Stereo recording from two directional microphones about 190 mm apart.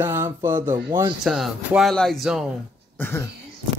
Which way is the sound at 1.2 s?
Centre (ahead or behind).